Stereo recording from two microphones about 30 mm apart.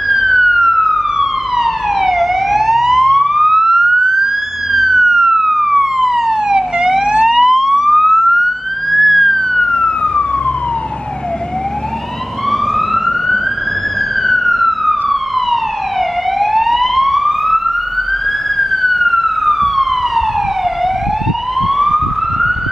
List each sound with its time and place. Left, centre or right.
0.1 s emergency vehicle: centre
4.7 s police car: centre
6.2 s emergency vehicle: centre
8.9 s emergency vehicle: centre
9.7 s emergency vehicle: left
12.4 s emergency vehicle: centre
16.3 s police car: centre
18.6 s police car: centre
21.6 s police car: centre